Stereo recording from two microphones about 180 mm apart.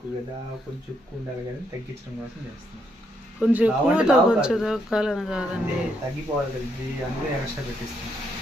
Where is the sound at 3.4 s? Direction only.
5° right (ahead or behind).